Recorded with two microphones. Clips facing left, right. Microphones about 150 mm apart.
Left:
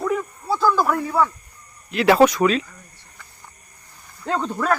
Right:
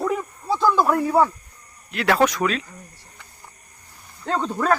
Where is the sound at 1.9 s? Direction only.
5° left (ahead or behind).